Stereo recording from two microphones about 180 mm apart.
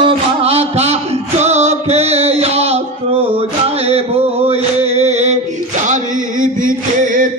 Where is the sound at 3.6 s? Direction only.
35° right (ahead or behind).